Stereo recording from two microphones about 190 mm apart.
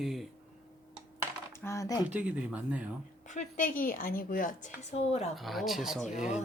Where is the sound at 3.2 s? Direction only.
40° left (ahead or behind).